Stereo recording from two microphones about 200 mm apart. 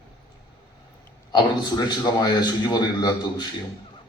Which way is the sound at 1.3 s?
20° left (ahead or behind).